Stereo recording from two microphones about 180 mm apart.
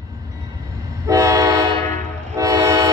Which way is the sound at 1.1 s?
20° right (ahead or behind).